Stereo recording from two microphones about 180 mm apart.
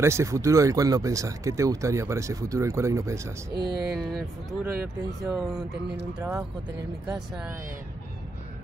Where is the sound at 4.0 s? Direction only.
Centre (ahead or behind).